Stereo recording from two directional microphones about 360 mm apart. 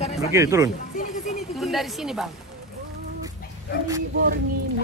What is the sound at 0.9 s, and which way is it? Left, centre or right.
Speech, left.